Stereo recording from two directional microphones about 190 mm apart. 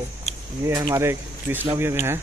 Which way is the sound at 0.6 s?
15° right (ahead or behind).